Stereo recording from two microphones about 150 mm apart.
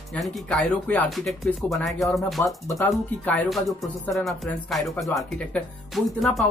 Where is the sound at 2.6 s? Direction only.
20° left (ahead or behind).